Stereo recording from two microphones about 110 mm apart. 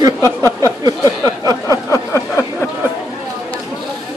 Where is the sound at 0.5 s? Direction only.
30° right (ahead or behind).